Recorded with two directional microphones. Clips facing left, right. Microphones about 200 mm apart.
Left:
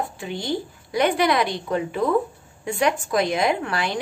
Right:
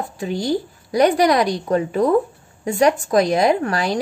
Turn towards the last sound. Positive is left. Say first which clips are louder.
# right 5 dB
turn(degrees=-40)  # may be behind; listen again after turning